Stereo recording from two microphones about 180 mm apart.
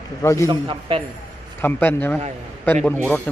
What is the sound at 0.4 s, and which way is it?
Speech, 30° right (ahead or behind).